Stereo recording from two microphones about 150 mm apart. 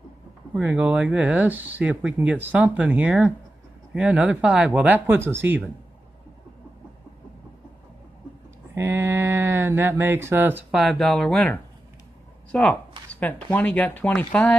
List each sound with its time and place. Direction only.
0.6 s speech: 10° right (ahead or behind)
8.7 s speech: 20° right (ahead or behind)
10.8 s speech: centre (ahead or behind)